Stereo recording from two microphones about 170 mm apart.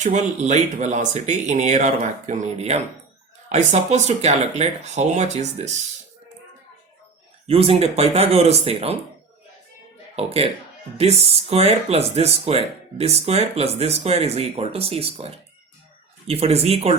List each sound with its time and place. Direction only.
0.0 s speech: 45° right (ahead or behind)
7.4 s speech: 35° right (ahead or behind)
10.2 s speech: 35° right (ahead or behind)